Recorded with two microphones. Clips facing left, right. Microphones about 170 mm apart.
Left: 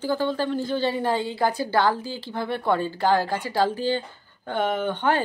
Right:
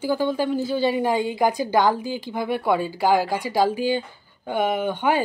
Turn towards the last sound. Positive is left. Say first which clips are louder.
# right 2 dB
turn(degrees=-10)  # may be behind; listen again after turning